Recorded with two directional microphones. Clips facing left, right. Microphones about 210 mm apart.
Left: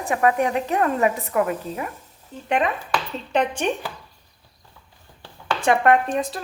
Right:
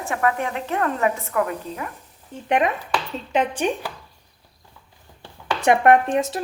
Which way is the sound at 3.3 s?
5° right (ahead or behind).